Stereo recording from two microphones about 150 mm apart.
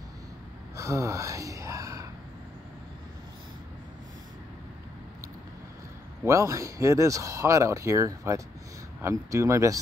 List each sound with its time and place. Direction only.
0.7 s speech: 20° right (ahead or behind)
6.2 s speech: 20° right (ahead or behind)